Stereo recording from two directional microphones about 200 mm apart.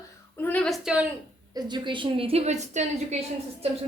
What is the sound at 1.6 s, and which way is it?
A woman's voice, 20° right (ahead or behind).